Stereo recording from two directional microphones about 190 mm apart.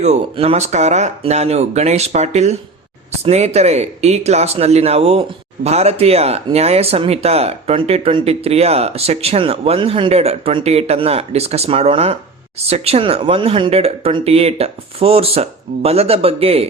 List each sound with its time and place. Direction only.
0.0 s speech: 35° right (ahead or behind)